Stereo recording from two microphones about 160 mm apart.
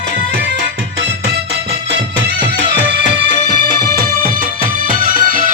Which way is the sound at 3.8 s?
70° right (ahead or behind).